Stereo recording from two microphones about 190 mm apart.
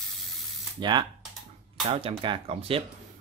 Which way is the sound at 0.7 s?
25° right (ahead or behind).